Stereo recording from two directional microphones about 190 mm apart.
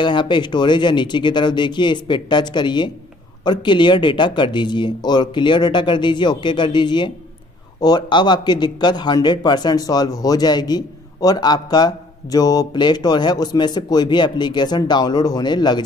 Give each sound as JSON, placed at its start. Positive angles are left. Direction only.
{"t": 0.0, "sound": "a man's voice", "side_deg": 25}